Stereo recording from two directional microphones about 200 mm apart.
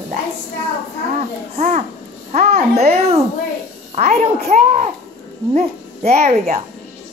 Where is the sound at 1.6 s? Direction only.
35° right (ahead or behind).